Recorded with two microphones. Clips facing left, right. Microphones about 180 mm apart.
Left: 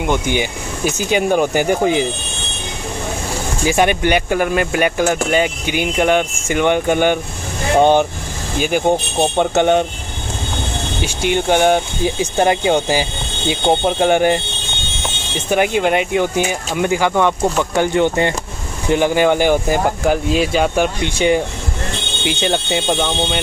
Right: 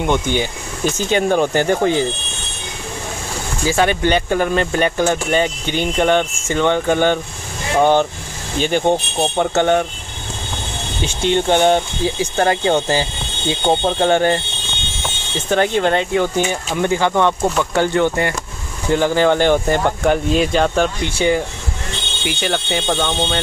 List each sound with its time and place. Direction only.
0.0 s speech: 10° left (ahead or behind)
3.6 s speech: 15° left (ahead or behind)
11.0 s speech: 10° left (ahead or behind)